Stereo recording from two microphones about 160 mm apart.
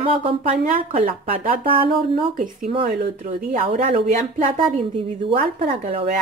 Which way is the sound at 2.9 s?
90° right.